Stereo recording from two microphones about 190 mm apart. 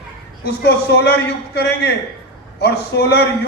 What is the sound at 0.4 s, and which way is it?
A man's voice, 60° left (ahead or behind).